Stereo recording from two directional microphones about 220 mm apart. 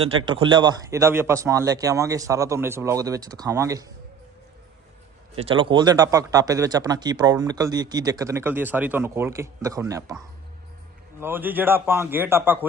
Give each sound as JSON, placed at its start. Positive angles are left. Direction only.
{"t": 0.0, "sound": "speech", "side_deg": -25}
{"t": 5.4, "sound": "speech", "side_deg": -25}
{"t": 11.2, "sound": "speech", "side_deg": -10}